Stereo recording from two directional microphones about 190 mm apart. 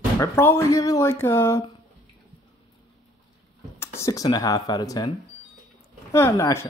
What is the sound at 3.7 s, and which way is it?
Speech, 15° left (ahead or behind).